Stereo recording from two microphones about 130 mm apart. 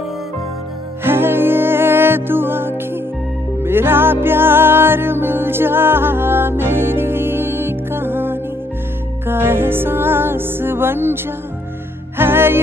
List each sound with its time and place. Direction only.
1.0 s music: 15° right (ahead or behind)
12.2 s music: 15° right (ahead or behind)